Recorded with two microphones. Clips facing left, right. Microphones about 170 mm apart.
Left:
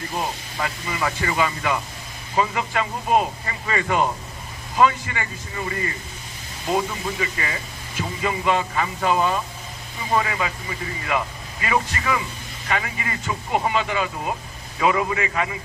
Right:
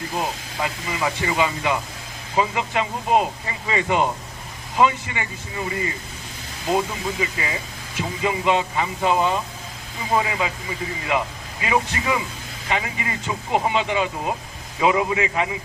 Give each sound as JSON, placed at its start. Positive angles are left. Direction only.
{"t": 0.2, "sound": "speech", "side_deg": -15}
{"t": 6.7, "sound": "speech", "side_deg": -20}